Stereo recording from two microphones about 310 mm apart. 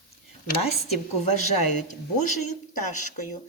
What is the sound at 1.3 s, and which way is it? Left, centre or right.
A woman's voice, left.